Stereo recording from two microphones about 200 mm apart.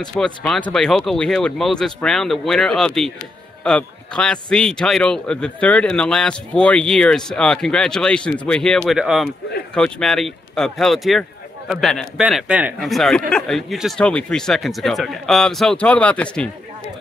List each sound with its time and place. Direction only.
0.0 s a man's voice: 5° left (ahead or behind)